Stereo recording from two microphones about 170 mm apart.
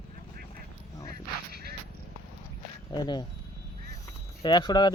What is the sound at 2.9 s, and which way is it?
Speech, 25° left (ahead or behind).